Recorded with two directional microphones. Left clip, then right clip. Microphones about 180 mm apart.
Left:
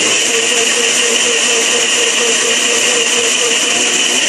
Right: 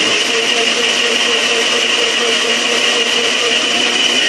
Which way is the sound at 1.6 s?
Centre (ahead or behind).